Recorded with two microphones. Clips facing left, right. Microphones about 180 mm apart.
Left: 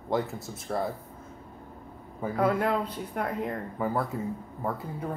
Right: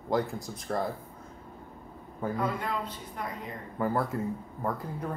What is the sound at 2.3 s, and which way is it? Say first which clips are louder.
Speech: left 8 dB; 65° left (ahead or behind).